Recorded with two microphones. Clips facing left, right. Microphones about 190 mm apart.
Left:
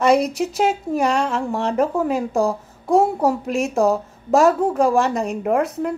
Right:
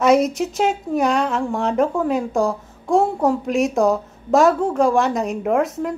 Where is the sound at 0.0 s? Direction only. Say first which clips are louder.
Right 1 dB; centre (ahead or behind).